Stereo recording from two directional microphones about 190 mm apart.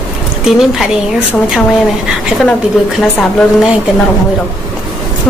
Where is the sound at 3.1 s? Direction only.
5° left (ahead or behind).